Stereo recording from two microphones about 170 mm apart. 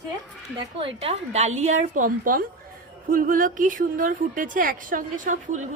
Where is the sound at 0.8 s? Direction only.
35° right (ahead or behind).